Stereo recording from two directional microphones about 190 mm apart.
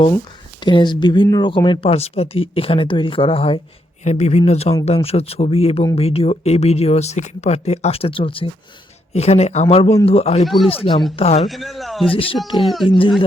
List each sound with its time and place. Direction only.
0.6 s speech: 25° left (ahead or behind)
10.4 s a man's voice: centre (ahead or behind)
10.7 s speech: 30° left (ahead or behind)
11.4 s a man's voice: centre (ahead or behind)
12.1 s speech: 30° left (ahead or behind)
12.6 s a man's voice: centre (ahead or behind)